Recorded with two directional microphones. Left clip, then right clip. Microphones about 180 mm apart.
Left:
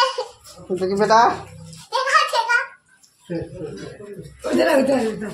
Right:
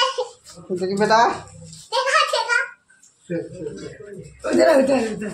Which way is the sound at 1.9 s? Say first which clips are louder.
Left 1 dB; 5° right (ahead or behind).